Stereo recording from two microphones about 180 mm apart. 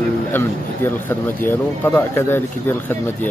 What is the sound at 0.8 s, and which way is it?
Speech, 10° left (ahead or behind).